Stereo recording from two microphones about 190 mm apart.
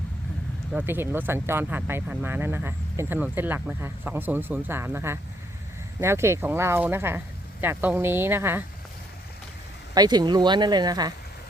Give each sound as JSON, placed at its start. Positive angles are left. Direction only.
{"t": 0.7, "sound": "speech", "side_deg": -10}
{"t": 9.9, "sound": "speech", "side_deg": -20}